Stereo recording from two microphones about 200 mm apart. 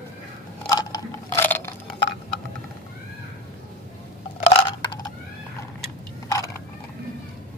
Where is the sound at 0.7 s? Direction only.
20° left (ahead or behind).